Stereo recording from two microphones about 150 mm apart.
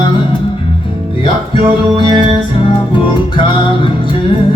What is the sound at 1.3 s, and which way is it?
Music, 35° left (ahead or behind).